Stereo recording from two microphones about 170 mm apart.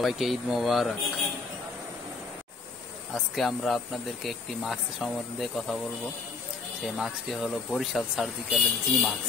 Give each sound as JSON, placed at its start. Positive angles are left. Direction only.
{"t": 0.0, "sound": "speech", "side_deg": 0}
{"t": 3.3, "sound": "speech", "side_deg": 0}
{"t": 7.0, "sound": "speech", "side_deg": 0}